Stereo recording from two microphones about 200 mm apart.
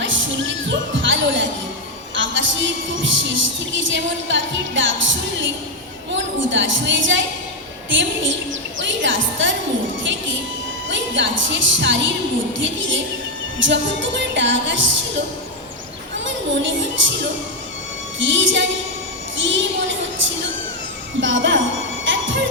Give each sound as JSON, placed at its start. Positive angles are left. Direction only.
{"t": 0.0, "sound": "music", "side_deg": -65}
{"t": 2.1, "sound": "a woman's voice", "side_deg": -70}
{"t": 8.8, "sound": "music", "side_deg": -70}
{"t": 10.8, "sound": "a woman's voice", "side_deg": -65}
{"t": 17.0, "sound": "a woman's voice", "side_deg": -70}
{"t": 18.2, "sound": "a woman's voice", "side_deg": -70}
{"t": 21.2, "sound": "a woman's voice", "side_deg": -70}
{"t": 22.0, "sound": "music", "side_deg": -70}